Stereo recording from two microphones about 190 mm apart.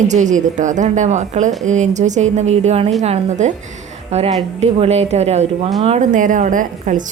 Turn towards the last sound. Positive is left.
turn(degrees=-40)  # may be behind; listen again after turning